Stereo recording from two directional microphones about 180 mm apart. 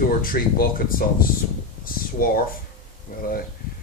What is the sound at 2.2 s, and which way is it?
Speech, 50° left (ahead or behind).